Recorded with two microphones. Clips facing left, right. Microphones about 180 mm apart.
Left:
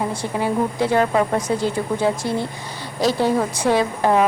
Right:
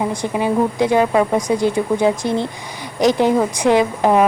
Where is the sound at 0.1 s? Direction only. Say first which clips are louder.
Right 3 dB; 15° right (ahead or behind).